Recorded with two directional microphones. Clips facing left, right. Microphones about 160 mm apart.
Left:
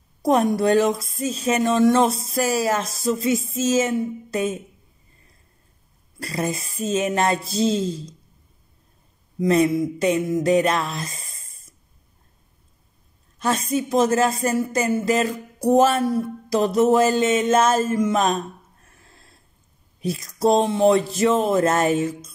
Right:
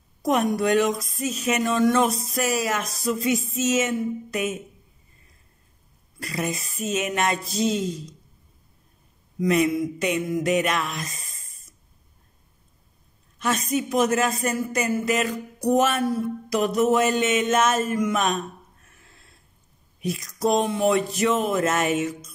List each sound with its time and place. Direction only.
0.2 s speech: 30° left (ahead or behind)
6.2 s speech: 35° left (ahead or behind)
9.4 s a sound: 30° left (ahead or behind)
13.4 s speech: 30° left (ahead or behind)